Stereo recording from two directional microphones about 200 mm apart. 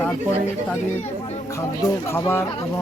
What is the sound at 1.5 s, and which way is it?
Speech, 15° left (ahead or behind).